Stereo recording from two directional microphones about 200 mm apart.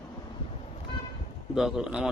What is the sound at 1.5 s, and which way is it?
Speech, 5° right (ahead or behind).